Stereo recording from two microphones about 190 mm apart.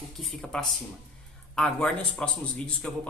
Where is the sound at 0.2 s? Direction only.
Centre (ahead or behind).